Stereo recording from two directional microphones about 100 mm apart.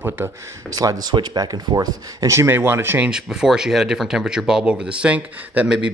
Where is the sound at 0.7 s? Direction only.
40° right (ahead or behind); by 3.1 s 25° right (ahead or behind).